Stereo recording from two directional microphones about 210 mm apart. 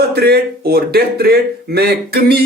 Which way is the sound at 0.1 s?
50° right (ahead or behind).